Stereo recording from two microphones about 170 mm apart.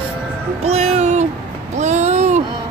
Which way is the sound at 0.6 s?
40° right (ahead or behind).